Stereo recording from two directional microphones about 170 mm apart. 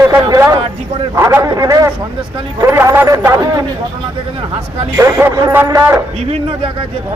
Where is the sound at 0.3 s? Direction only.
20° right (ahead or behind).